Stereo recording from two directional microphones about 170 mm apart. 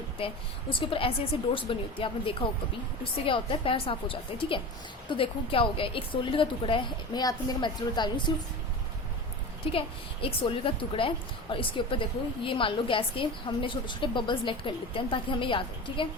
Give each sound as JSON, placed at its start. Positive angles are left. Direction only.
{"t": 0.7, "sound": "a woman's voice", "side_deg": 30}
{"t": 9.7, "sound": "a woman's voice", "side_deg": 30}